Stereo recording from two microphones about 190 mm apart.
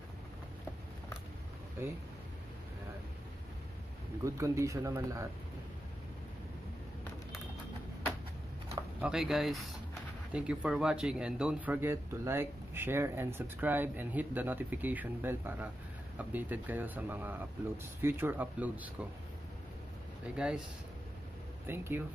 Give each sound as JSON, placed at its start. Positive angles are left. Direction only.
{"t": 4.2, "sound": "a man's voice", "side_deg": -15}
{"t": 9.0, "sound": "a man's voice", "side_deg": -5}
{"t": 20.3, "sound": "speech", "side_deg": -5}
{"t": 21.6, "sound": "a man's voice", "side_deg": -10}